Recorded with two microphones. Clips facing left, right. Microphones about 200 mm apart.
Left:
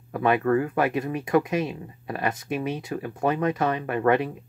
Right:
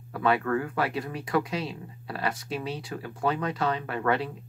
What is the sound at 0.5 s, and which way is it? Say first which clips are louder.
Speech: left 6 dB; 35° left (ahead or behind).